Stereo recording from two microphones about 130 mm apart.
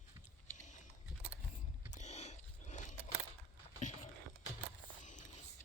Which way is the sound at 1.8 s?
65° left (ahead or behind).